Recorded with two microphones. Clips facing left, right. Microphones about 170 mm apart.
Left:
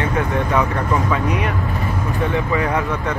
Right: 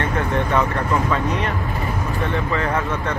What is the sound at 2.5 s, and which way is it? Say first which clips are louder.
Speech: left 1 dB; 15° left (ahead or behind).